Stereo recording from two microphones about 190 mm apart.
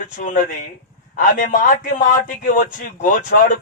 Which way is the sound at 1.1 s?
45° left (ahead or behind).